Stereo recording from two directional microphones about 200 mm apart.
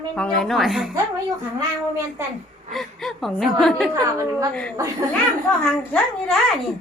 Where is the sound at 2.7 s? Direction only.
Centre (ahead or behind).